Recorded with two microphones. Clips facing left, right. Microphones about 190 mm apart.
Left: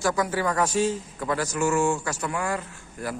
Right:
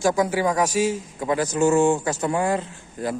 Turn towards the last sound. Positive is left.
turn(degrees=-25)  # may be behind; listen again after turning